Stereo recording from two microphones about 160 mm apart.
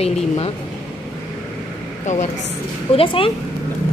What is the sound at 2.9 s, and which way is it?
Speech, 35° left (ahead or behind).